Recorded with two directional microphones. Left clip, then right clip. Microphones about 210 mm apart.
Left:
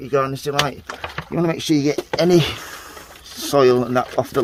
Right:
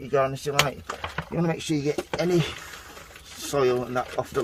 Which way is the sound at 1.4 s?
50° left (ahead or behind).